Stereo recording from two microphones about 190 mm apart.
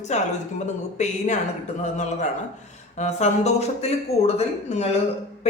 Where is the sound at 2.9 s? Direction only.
35° left (ahead or behind).